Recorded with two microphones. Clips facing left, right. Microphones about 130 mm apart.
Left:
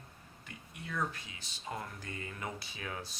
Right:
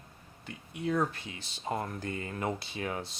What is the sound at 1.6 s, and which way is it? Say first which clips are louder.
Speech: right 8 dB; 45° right (ahead or behind).